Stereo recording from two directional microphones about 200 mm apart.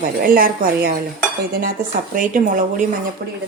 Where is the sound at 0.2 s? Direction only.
45° right (ahead or behind).